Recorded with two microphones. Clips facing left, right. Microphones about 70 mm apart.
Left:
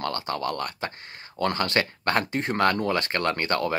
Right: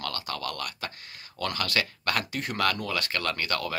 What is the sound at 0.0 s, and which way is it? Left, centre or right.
Speech, left.